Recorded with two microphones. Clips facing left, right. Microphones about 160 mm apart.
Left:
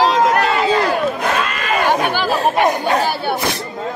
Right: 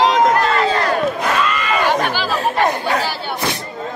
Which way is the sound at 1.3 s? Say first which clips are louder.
Right 1 dB; 50° left (ahead or behind).